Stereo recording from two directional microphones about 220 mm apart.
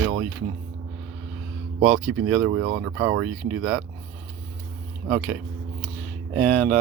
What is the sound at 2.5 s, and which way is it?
Speech, 40° right (ahead or behind).